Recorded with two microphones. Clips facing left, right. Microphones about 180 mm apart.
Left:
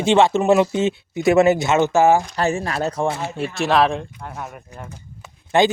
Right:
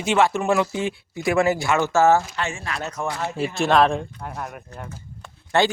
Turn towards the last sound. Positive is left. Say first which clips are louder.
# left 4 dB
turn(degrees=15)  # may be behind; listen again after turning